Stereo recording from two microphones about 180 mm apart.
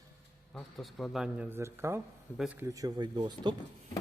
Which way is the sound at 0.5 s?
Centre (ahead or behind).